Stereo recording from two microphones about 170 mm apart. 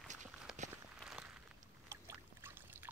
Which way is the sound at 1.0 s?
5° right (ahead or behind).